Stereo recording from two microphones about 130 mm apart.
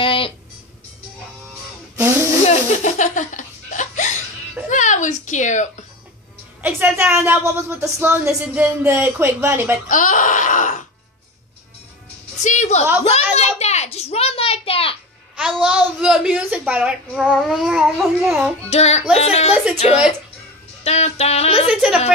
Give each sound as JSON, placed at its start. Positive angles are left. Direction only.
{"t": 0.0, "sound": "music", "side_deg": 45}
{"t": 2.4, "sound": "laughter", "side_deg": 70}
{"t": 4.6, "sound": "speech", "side_deg": 70}
{"t": 6.6, "sound": "a child's voice", "side_deg": -15}
{"t": 9.8, "sound": "a sound", "side_deg": 80}
{"t": 12.4, "sound": "a woman's voice", "side_deg": 60}
{"t": 13.0, "sound": "a sound", "side_deg": 55}
{"t": 15.3, "sound": "a child's voice", "side_deg": -5}
{"t": 17.1, "sound": "a sound", "side_deg": 0}
{"t": 18.7, "sound": "speech", "side_deg": 55}
{"t": 20.8, "sound": "music", "side_deg": 55}
{"t": 21.6, "sound": "a child's voice", "side_deg": -5}